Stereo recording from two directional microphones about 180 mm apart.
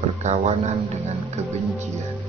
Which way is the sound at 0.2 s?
40° right (ahead or behind).